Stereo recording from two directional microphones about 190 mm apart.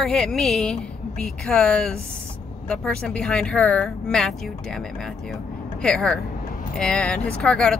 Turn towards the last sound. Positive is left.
turn(degrees=5)  # may be behind; listen again after turning